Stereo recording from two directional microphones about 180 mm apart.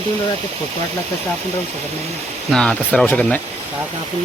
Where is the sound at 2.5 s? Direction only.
5° left (ahead or behind).